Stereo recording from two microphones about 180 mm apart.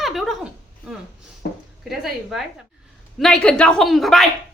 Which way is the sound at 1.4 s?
65° left (ahead or behind).